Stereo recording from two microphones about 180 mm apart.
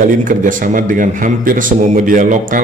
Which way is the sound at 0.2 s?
45° right (ahead or behind).